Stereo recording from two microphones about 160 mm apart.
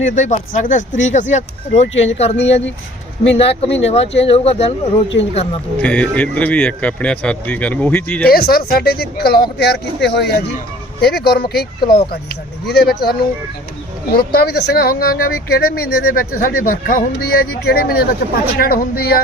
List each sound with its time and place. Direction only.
0.0 s speech: 50° left (ahead or behind)
5.8 s speech: 10° left (ahead or behind)
8.3 s speech: 70° left (ahead or behind)